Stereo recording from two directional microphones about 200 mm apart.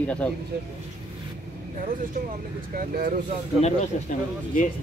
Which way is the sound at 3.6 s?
35° left (ahead or behind).